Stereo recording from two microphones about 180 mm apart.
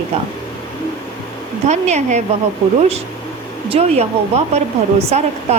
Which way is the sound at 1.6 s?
40° right (ahead or behind).